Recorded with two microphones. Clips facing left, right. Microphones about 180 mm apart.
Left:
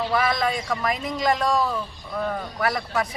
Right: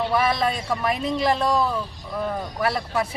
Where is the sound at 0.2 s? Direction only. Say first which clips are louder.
Right 1 dB; 30° right (ahead or behind).